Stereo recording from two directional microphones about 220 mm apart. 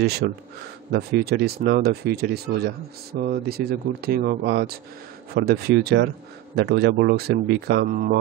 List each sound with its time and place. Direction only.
0.2 s speech: 45° right (ahead or behind)